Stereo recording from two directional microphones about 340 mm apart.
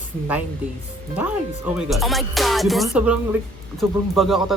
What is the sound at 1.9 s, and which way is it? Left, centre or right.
A woman's voice, centre.